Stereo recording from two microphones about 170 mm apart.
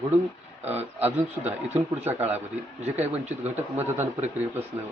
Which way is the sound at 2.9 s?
45° right (ahead or behind).